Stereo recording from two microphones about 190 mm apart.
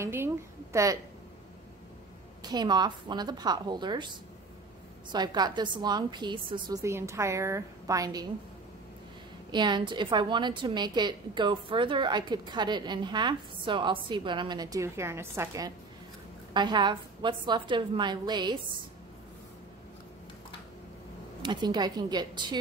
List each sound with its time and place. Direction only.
0.0 s a woman's voice: 10° right (ahead or behind)
2.4 s a woman's voice: 20° right (ahead or behind)
9.5 s a woman's voice: 25° right (ahead or behind)
21.4 s a woman's voice: 25° right (ahead or behind)